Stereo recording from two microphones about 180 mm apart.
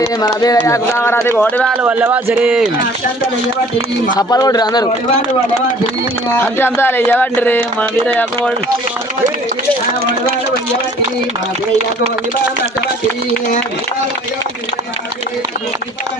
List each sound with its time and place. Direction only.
0.0 s speech: 20° left (ahead or behind)
1.8 s speech: 10° right (ahead or behind)
4.2 s speech: 20° left (ahead or behind)
6.3 s speech: 10° left (ahead or behind)